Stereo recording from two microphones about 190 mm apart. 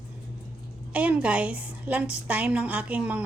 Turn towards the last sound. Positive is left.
turn(degrees=-10)  # may be behind; listen again after turning